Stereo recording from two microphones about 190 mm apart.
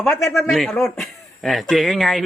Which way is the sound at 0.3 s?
Centre (ahead or behind).